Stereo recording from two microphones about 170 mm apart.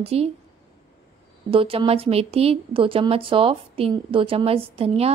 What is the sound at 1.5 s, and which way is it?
A woman's voice, 30° right (ahead or behind).